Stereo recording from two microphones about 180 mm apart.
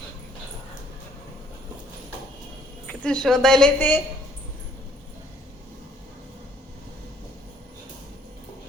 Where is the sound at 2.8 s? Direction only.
5° left (ahead or behind).